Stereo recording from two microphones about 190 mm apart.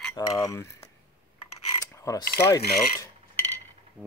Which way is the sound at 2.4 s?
15° left (ahead or behind).